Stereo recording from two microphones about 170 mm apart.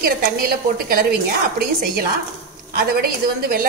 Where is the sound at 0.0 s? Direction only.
60° right (ahead or behind).